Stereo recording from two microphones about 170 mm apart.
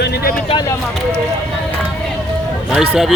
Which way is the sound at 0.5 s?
30° left (ahead or behind).